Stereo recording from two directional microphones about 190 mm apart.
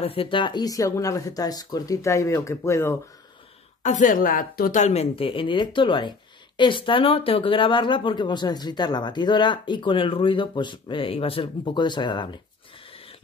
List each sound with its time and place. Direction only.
0.0 s speech: 30° left (ahead or behind); by 3.0 s 15° left (ahead or behind)
3.8 s a woman's voice: 40° left (ahead or behind); by 12.4 s 25° left (ahead or behind)